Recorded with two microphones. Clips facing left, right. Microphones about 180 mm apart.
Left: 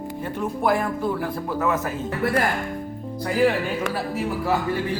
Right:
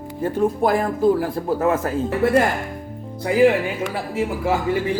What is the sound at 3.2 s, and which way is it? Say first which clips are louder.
Speech: right 5 dB; 15° right (ahead or behind).